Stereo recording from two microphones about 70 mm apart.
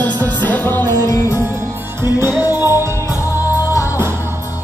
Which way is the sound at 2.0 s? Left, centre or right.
Right.